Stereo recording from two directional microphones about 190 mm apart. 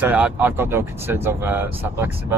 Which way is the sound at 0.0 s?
10° right (ahead or behind).